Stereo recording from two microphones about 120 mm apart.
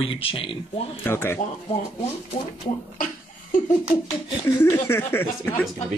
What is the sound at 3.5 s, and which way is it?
Speech, 90° left.